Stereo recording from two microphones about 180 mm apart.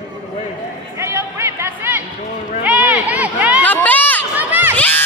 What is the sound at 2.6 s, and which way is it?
Run, 5° right (ahead or behind).